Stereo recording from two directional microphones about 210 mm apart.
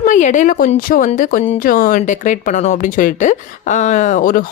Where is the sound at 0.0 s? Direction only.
35° left (ahead or behind).